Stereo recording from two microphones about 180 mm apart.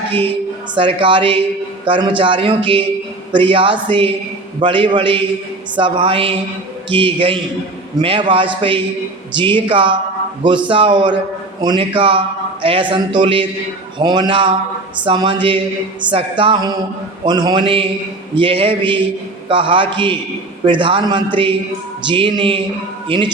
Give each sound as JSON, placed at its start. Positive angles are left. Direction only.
{"t": 0.1, "sound": "a woman's voice", "side_deg": -30}